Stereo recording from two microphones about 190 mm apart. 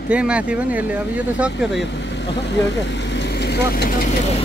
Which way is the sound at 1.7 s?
70° left (ahead or behind).